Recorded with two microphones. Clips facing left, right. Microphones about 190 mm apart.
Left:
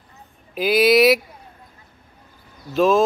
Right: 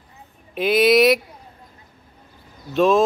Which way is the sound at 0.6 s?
Centre (ahead or behind).